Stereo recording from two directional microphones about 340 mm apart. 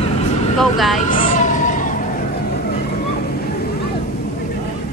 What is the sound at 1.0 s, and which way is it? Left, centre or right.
Cat, left.